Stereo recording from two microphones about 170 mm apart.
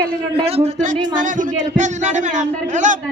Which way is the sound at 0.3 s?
35° right (ahead or behind).